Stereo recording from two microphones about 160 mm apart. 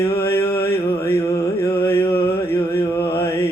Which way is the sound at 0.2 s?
15° left (ahead or behind).